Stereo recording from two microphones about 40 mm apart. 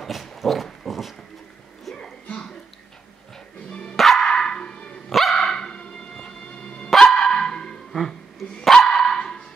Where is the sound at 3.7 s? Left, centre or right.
Left.